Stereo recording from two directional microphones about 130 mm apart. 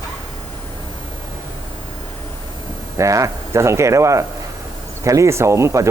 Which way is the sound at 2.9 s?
25° right (ahead or behind).